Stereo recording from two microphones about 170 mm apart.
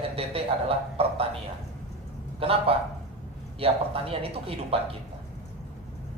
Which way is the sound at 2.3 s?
35° right (ahead or behind).